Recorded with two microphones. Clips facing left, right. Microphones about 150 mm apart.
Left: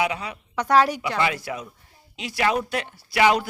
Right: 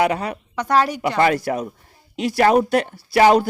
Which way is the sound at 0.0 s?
50° right (ahead or behind).